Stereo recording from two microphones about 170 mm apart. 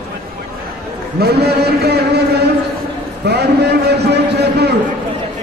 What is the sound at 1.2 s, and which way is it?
A man's voice, 70° right (ahead or behind).